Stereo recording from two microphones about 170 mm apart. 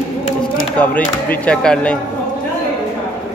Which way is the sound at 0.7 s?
10° left (ahead or behind).